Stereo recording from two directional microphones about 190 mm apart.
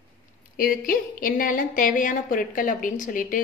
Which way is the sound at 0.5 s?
50° left (ahead or behind).